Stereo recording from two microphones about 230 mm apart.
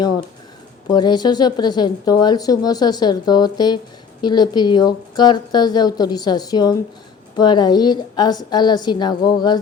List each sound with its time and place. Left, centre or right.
0.9 s a woman's voice: centre